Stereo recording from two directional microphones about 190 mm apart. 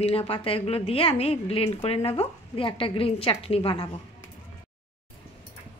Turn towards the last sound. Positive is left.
turn(degrees=30)  # may be behind; listen again after turning